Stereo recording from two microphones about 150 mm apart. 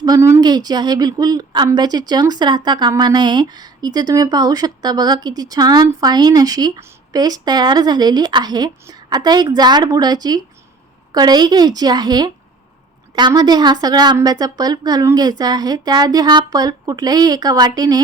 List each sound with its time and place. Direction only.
0.0 s a woman's voice: 20° right (ahead or behind)